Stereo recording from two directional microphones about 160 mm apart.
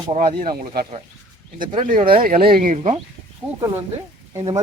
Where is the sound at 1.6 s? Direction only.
30° right (ahead or behind).